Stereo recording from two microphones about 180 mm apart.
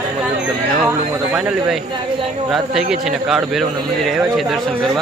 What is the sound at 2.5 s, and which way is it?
A man's voice, centre (ahead or behind).